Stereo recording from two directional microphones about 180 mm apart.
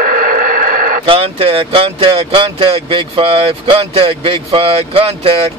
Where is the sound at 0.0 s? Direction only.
50° right (ahead or behind).